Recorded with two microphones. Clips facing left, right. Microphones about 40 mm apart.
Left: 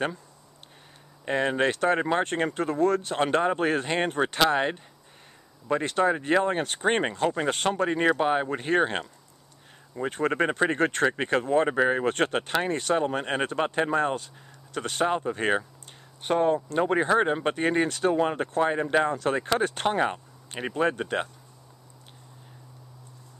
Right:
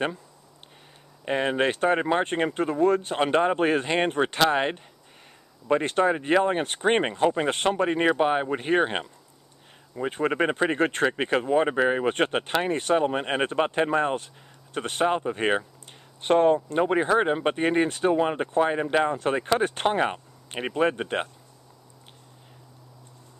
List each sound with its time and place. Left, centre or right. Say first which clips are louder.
1.2 s speech: right 1 dB; centre
2.0 s speech: right 1 dB; centre
6.0 s speech: even; centre
12.1 s speech: right 1 dB; right
12.9 s speech: right 3 dB; centre
14.1 s a sound: right 2 dB; right
14.8 s speech: right 1 dB; right
15.0 s speech: right 2 dB; centre
16.2 s speech: right 4 dB; right
16.7 s speech: right 1 dB; centre